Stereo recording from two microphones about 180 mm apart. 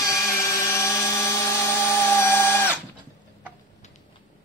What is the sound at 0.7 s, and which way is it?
Helicopter, 15° left (ahead or behind).